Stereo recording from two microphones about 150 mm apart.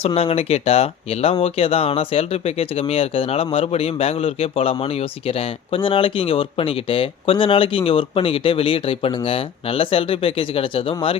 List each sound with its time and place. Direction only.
0.0 s speech: 40° left (ahead or behind)